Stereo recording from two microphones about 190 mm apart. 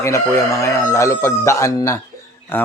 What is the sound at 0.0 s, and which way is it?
Speech, 15° left (ahead or behind).